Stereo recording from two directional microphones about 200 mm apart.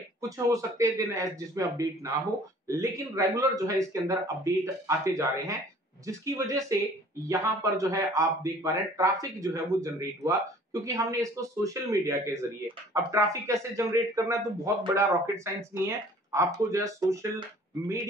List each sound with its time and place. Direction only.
0.5 s a man's voice: 15° right (ahead or behind)